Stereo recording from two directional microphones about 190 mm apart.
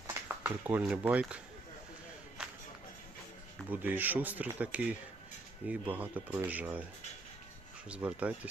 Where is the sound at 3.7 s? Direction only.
10° right (ahead or behind).